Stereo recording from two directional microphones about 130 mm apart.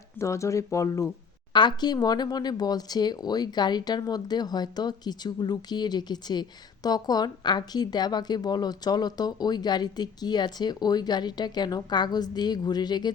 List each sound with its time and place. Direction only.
0.2 s speech: 25° left (ahead or behind)